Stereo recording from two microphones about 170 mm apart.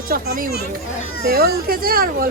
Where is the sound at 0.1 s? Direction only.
55° right (ahead or behind).